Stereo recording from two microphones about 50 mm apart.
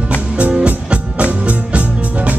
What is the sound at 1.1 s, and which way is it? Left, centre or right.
Music, right.